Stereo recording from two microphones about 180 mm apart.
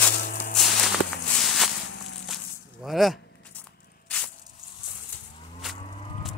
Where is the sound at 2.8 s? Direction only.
Centre (ahead or behind).